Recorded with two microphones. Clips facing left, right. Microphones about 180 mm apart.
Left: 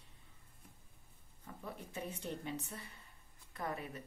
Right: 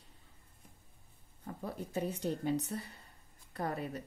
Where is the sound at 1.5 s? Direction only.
40° right (ahead or behind).